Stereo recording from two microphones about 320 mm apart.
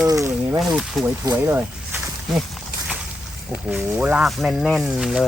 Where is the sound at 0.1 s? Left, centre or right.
Centre.